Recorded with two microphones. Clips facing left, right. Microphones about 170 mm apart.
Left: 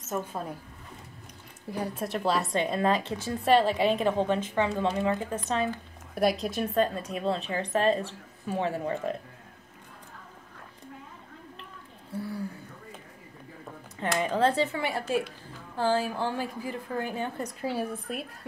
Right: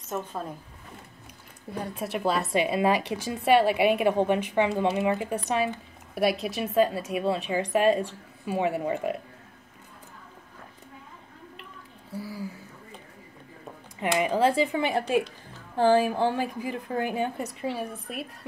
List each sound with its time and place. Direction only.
0.1 s speech: 10° left (ahead or behind)
1.7 s a woman's voice: centre (ahead or behind)
5.7 s a woman's voice: centre (ahead or behind)
12.2 s a sound: 5° right (ahead or behind)
14.1 s a woman's voice: 10° right (ahead or behind)
17.6 s a woman's voice: centre (ahead or behind)